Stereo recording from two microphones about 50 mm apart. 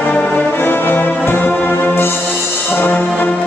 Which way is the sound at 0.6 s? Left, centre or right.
Left.